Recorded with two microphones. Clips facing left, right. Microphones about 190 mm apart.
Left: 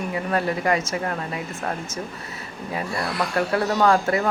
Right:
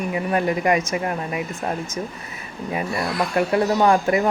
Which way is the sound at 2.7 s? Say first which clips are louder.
Right 2 dB; 15° right (ahead or behind).